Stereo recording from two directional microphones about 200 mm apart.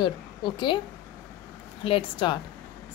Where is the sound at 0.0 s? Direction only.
25° left (ahead or behind).